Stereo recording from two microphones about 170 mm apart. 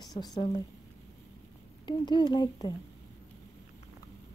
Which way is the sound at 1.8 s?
25° left (ahead or behind).